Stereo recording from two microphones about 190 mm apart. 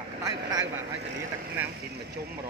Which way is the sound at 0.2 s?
20° right (ahead or behind).